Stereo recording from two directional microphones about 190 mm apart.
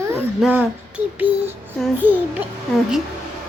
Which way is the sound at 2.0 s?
10° right (ahead or behind).